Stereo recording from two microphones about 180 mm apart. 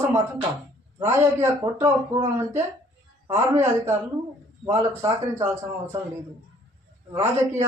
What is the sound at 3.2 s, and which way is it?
A man's voice, 15° right (ahead or behind).